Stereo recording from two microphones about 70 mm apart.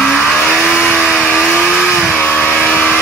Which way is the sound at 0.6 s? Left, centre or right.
Centre.